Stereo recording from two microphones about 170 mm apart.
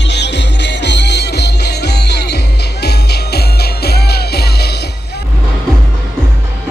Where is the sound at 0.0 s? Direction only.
90° left; by 4.8 s 70° left (ahead or behind).